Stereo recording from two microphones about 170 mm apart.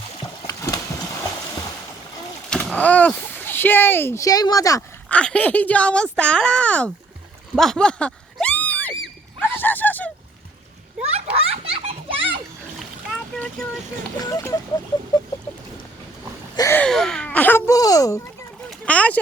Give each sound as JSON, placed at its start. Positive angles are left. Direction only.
{"t": 0.4, "sound": "horse", "side_deg": 20}
{"t": 2.5, "sound": "a sound", "side_deg": 5}
{"t": 3.3, "sound": "a woman's voice", "side_deg": 10}
{"t": 5.0, "sound": "a woman's voice", "side_deg": 5}
{"t": 7.5, "sound": "a sound", "side_deg": 5}
{"t": 9.4, "sound": "speech", "side_deg": 10}
{"t": 11.0, "sound": "children playing", "side_deg": -35}
{"t": 13.4, "sound": "speech", "side_deg": 5}
{"t": 14.2, "sound": "speech", "side_deg": 20}
{"t": 16.6, "sound": "a woman's voice", "side_deg": 15}
{"t": 16.8, "sound": "a woman's voice", "side_deg": 5}
{"t": 18.7, "sound": "a sound", "side_deg": 10}